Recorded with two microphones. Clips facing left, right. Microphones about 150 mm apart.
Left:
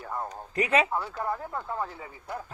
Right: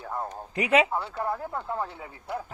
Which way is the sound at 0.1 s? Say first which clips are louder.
Right 1 dB; 15° right (ahead or behind).